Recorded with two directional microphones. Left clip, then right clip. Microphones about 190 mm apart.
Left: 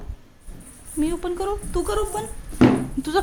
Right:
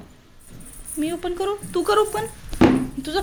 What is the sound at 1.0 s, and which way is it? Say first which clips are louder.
Speech: even; 15° left (ahead or behind).